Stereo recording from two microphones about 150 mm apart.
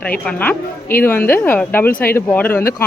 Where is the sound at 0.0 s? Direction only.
10° left (ahead or behind).